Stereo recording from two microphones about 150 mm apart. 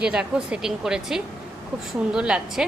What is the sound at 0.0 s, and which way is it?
Speech, 5° right (ahead or behind).